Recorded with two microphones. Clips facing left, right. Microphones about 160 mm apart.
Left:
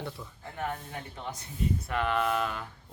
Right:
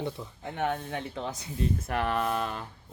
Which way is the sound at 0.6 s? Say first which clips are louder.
Right 5 dB; 80° right.